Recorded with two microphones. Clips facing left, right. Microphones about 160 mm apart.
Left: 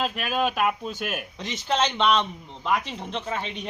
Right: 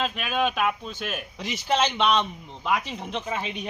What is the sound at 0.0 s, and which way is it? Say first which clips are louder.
Speech: even; 5° left (ahead or behind).